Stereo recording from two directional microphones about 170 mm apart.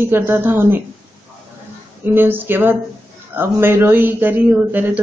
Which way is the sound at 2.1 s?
10° right (ahead or behind).